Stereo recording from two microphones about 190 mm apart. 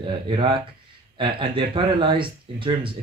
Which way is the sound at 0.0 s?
25° right (ahead or behind).